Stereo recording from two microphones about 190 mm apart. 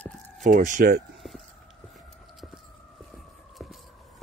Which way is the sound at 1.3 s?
Centre (ahead or behind).